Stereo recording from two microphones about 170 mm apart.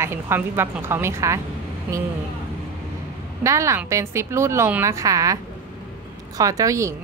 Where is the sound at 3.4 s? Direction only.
15° right (ahead or behind).